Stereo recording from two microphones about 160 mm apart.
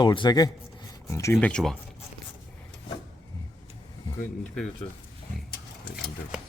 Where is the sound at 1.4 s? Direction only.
5° left (ahead or behind).